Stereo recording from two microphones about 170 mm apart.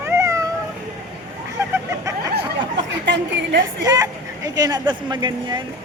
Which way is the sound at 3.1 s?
90° right.